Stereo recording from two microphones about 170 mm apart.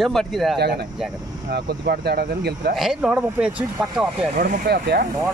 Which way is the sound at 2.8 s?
5° right (ahead or behind).